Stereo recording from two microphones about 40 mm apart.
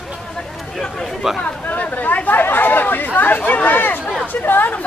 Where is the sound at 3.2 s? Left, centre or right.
Left.